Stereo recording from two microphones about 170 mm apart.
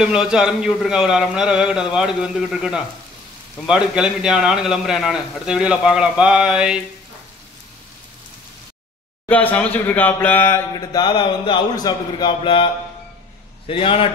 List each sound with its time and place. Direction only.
0.0 s a man's voice: 5° right (ahead or behind)
9.3 s speech: 10° left (ahead or behind)
10.7 s a man's voice: 25° left (ahead or behind)
13.7 s a man's voice: 30° left (ahead or behind)